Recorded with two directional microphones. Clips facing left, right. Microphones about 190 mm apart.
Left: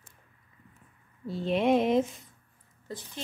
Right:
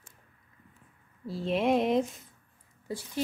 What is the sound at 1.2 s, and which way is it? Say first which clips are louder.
Speech: left 1 dB; centre (ahead or behind).